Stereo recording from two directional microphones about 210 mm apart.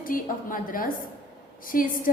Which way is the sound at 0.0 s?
40° left (ahead or behind).